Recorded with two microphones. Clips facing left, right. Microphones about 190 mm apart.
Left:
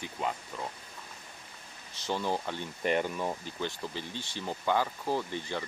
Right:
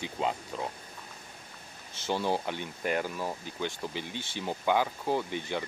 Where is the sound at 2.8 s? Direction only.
5° right (ahead or behind).